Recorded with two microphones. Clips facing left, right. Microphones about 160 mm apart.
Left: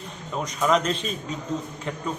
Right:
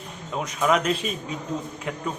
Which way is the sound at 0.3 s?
5° right (ahead or behind).